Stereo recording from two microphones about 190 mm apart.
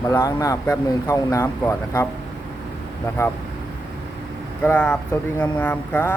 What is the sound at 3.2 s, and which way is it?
Speech, 15° left (ahead or behind).